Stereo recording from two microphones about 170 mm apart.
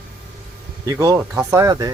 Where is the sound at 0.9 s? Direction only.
20° right (ahead or behind).